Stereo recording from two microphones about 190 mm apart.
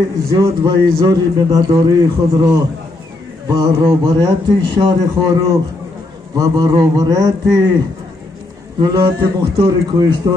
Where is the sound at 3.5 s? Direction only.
20° right (ahead or behind).